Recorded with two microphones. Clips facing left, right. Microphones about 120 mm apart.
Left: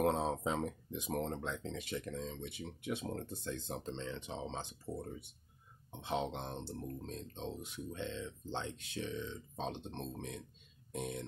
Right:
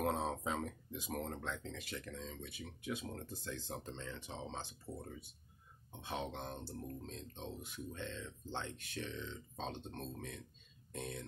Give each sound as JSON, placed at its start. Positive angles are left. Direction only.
{"t": 0.0, "sound": "speech", "side_deg": 25}
{"t": 5.9, "sound": "speech", "side_deg": 20}